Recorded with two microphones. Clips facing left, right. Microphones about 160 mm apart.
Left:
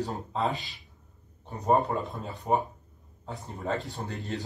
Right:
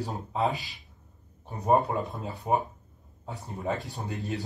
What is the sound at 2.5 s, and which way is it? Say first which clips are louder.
Speech: even; 10° right (ahead or behind).